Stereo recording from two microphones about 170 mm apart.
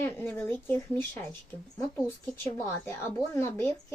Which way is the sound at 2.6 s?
15° left (ahead or behind).